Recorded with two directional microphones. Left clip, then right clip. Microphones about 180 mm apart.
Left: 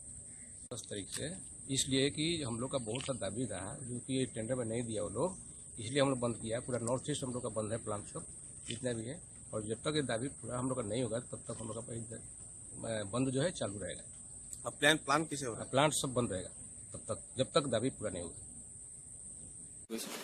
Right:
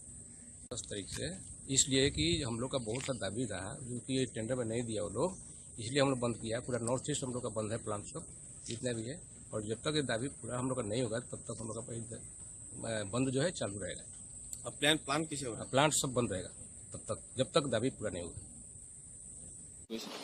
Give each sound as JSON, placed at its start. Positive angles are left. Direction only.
{"t": 0.7, "sound": "speech", "side_deg": -5}
{"t": 14.6, "sound": "a man's voice", "side_deg": 20}
{"t": 15.6, "sound": "a man's voice", "side_deg": -5}